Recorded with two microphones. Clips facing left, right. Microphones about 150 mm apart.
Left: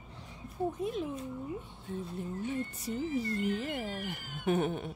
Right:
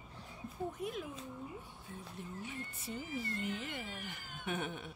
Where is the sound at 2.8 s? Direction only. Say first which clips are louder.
Left 8 dB; 40° left (ahead or behind).